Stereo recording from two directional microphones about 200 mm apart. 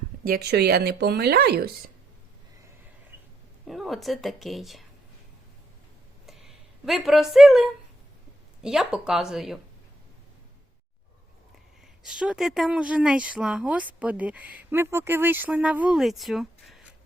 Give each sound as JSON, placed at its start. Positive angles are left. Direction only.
{"t": 0.3, "sound": "speech", "side_deg": -55}
{"t": 3.7, "sound": "speech", "side_deg": 0}
{"t": 6.2, "sound": "a sound", "side_deg": 0}
{"t": 8.6, "sound": "speech", "side_deg": -5}
{"t": 12.0, "sound": "speech", "side_deg": -5}